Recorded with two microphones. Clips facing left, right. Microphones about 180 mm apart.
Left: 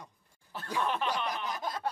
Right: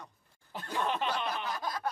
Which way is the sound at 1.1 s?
15° left (ahead or behind).